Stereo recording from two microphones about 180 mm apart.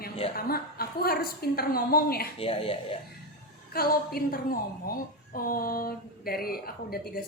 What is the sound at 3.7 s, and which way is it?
Speech, 55° left (ahead or behind).